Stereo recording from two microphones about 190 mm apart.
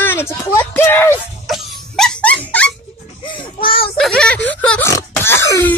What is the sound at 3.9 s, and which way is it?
Speech, 5° left (ahead or behind).